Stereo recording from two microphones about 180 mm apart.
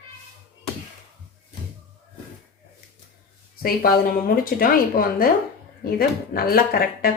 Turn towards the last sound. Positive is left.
turn(degrees=55)  # may be behind; listen again after turning